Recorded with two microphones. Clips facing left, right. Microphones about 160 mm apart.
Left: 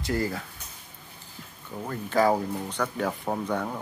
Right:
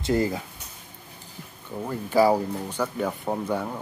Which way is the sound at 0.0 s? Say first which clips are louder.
Right 5 dB; 20° right (ahead or behind).